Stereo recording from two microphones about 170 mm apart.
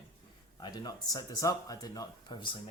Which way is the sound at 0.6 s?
25° left (ahead or behind).